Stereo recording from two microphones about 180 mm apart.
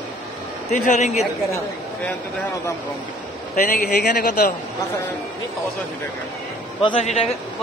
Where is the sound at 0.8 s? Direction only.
45° left (ahead or behind).